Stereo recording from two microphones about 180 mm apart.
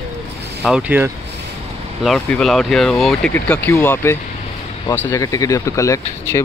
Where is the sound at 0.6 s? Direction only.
5° right (ahead or behind).